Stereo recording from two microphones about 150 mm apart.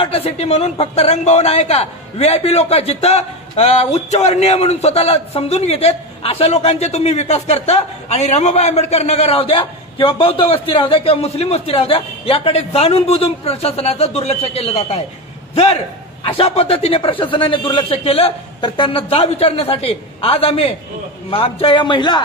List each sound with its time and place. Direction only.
0.0 s a man's voice: 40° left (ahead or behind)